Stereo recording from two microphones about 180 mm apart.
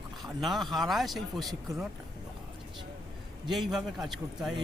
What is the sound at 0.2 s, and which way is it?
Speech, centre (ahead or behind).